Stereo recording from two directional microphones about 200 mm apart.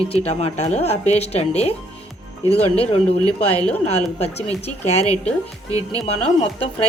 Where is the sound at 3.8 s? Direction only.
30° left (ahead or behind).